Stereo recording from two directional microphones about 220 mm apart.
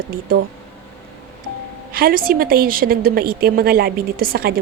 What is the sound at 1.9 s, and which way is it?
A woman's voice, 40° right (ahead or behind).